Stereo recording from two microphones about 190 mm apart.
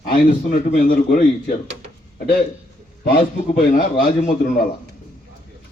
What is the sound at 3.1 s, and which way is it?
A man's voice, 55° left (ahead or behind).